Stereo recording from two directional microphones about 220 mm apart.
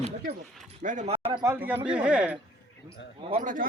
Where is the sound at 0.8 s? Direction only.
35° right (ahead or behind).